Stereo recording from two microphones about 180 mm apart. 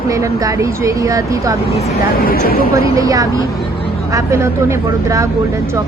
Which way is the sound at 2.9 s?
20° right (ahead or behind).